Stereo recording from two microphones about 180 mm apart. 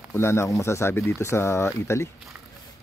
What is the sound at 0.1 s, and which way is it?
Speech, 15° left (ahead or behind).